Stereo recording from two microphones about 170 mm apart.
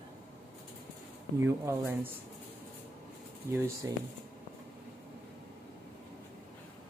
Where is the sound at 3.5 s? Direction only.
15° right (ahead or behind).